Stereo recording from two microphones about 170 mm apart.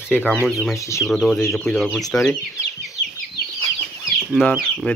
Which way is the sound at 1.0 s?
Centre (ahead or behind).